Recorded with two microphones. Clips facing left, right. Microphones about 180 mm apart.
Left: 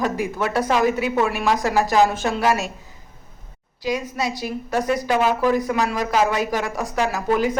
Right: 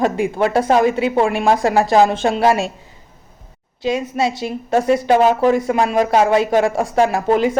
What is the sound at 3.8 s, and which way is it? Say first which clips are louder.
Speech: right 5 dB; 25° right (ahead or behind).